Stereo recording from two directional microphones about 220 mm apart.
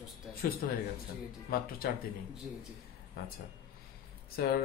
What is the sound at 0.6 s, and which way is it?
A man's voice, 40° left (ahead or behind).